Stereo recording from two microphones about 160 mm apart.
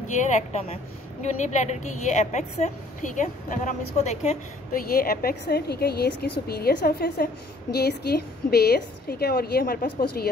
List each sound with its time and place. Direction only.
0.3 s a woman's voice: 45° left (ahead or behind)
4.7 s a woman's voice: 70° left (ahead or behind)
7.7 s a woman's voice: 90° left; by 10.2 s 65° left (ahead or behind)